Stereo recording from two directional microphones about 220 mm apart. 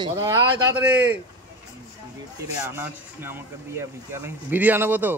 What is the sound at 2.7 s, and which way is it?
Speech, 10° right (ahead or behind).